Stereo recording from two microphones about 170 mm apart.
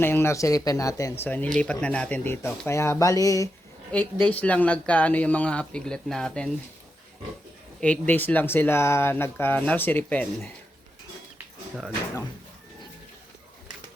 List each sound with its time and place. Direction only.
0.0 s speech: 15° left (ahead or behind)
4.2 s speech: 10° left (ahead or behind)
7.8 s speech: 10° left (ahead or behind)